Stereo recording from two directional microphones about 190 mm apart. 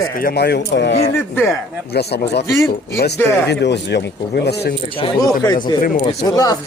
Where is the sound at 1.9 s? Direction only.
60° left (ahead or behind).